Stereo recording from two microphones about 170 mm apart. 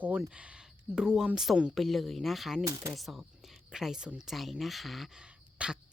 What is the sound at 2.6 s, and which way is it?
Speech, 20° right (ahead or behind).